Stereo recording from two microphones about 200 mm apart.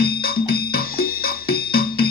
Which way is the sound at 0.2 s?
50° left (ahead or behind).